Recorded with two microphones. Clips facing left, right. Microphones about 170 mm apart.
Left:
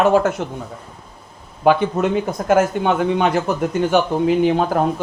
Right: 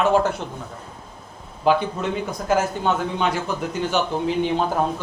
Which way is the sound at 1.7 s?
55° left (ahead or behind).